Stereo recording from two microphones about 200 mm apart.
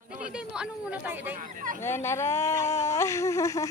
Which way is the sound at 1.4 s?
40° right (ahead or behind).